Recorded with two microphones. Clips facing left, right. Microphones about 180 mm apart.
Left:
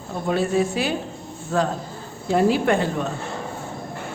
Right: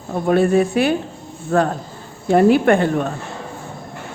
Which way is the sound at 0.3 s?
55° right (ahead or behind).